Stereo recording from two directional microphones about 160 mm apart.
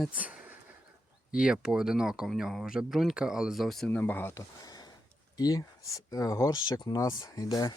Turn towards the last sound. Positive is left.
turn(degrees=25)  # may be behind; listen again after turning